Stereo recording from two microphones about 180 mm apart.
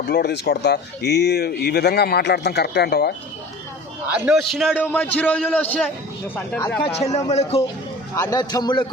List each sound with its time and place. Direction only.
0.1 s speech: 60° left (ahead or behind)
4.3 s a man's voice: centre (ahead or behind)
4.7 s a man's voice: 10° left (ahead or behind)
6.8 s a man's voice: 35° left (ahead or behind)
8.1 s a man's voice: 15° left (ahead or behind)